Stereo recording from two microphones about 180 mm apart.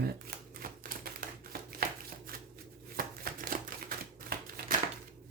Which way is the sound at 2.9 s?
55° right (ahead or behind).